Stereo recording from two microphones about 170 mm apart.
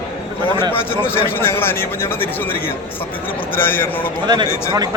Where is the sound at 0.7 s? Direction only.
10° left (ahead or behind).